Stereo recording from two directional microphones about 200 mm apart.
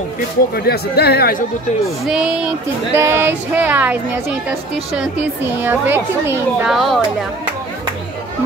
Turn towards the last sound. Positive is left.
turn(degrees=0)  # may be behind; listen again after turning